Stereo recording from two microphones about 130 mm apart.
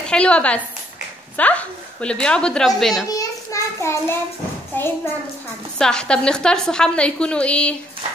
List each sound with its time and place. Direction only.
0.0 s a woman's voice: 5° left (ahead or behind)
3.2 s a sound: 25° left (ahead or behind)
4.7 s a woman's voice: 15° left (ahead or behind)
5.8 s a woman's voice: 5° left (ahead or behind)